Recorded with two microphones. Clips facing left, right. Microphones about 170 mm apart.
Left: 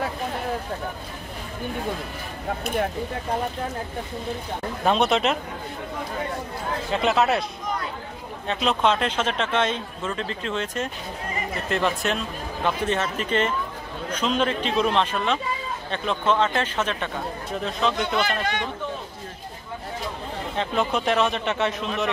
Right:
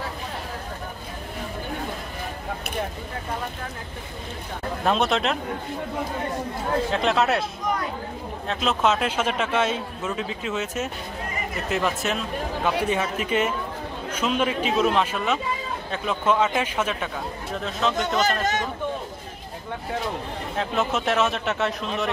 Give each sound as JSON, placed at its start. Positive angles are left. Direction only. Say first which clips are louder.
{"t": 4.8, "sound": "speech", "louder": "left 2 dB", "side_deg": 0}
{"t": 6.9, "sound": "speech", "louder": "left 3 dB", "side_deg": 0}
{"t": 8.5, "sound": "speech", "louder": "left 1 dB", "side_deg": 0}
{"t": 17.9, "sound": "speech", "louder": "right 1 dB", "side_deg": -45}
{"t": 20.5, "sound": "speech", "louder": "even", "side_deg": 0}